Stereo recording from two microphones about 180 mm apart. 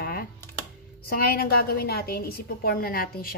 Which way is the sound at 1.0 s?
55° left (ahead or behind).